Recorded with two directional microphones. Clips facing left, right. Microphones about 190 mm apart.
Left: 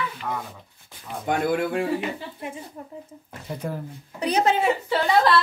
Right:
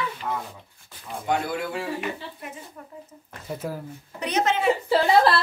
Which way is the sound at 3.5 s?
5° right (ahead or behind).